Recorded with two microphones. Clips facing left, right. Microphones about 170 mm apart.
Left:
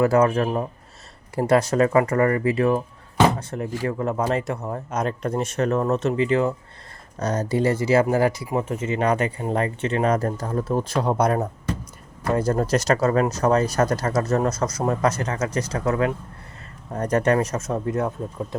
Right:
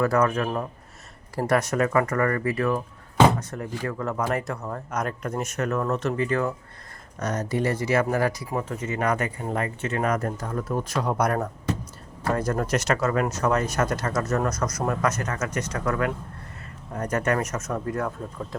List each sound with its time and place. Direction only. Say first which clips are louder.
0.0 s speech: left 4 dB; 25° left (ahead or behind)
16.9 s speech: left 5 dB; 35° left (ahead or behind)